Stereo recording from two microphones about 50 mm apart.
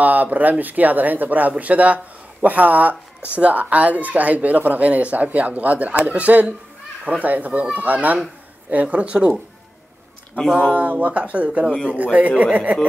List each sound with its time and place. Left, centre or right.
0.0 s speech: right
10.5 s speech: right
11.6 s speech: centre
11.9 s speech: right